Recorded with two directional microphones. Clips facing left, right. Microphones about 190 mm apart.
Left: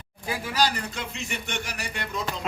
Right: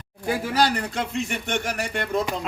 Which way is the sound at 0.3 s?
55° right (ahead or behind).